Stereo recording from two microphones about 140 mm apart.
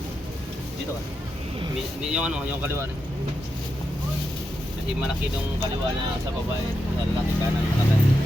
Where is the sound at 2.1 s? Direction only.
5° right (ahead or behind).